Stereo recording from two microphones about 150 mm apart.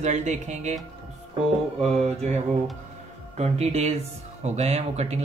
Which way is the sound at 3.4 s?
45° right (ahead or behind).